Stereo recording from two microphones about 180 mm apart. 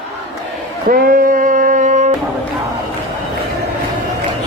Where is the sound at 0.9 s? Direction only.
50° right (ahead or behind).